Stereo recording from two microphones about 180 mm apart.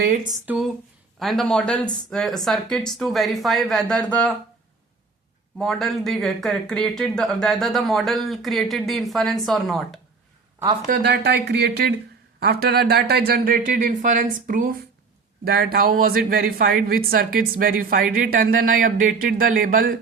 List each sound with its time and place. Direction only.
0.4 s speech: 5° right (ahead or behind)
5.5 s speech: centre (ahead or behind)
10.8 s speech: 55° right (ahead or behind)